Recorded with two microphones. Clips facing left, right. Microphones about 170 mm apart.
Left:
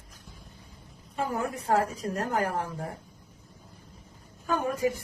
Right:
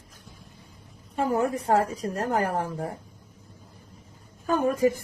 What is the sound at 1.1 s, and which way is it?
Speech, 30° right (ahead or behind).